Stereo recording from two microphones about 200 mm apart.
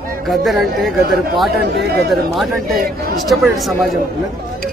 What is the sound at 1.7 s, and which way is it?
Speech, 55° right (ahead or behind).